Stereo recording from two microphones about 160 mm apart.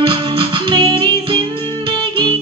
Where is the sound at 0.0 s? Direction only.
30° right (ahead or behind).